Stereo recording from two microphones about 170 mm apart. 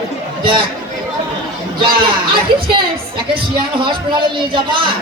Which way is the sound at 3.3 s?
30° right (ahead or behind).